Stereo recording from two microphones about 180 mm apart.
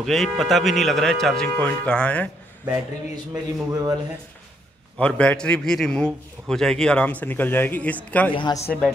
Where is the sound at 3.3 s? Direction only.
20° right (ahead or behind).